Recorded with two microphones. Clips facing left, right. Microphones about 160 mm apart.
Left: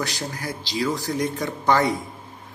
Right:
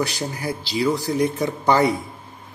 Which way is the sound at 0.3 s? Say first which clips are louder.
Right 4 dB; 10° right (ahead or behind).